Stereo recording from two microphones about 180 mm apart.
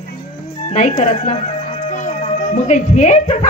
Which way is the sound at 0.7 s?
40° left (ahead or behind).